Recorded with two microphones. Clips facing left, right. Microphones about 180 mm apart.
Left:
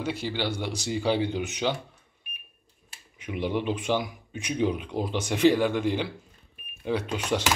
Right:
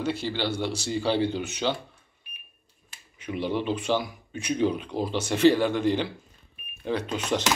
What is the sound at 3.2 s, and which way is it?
Speech, 10° left (ahead or behind).